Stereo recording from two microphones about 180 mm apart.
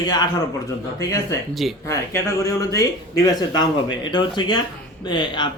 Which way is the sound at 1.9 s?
15° left (ahead or behind).